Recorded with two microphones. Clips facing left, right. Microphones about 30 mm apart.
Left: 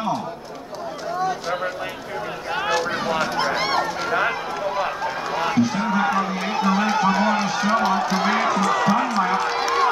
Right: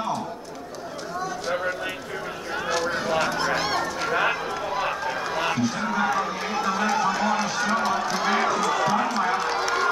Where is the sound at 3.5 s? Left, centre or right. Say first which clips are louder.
Left 3 dB; centre.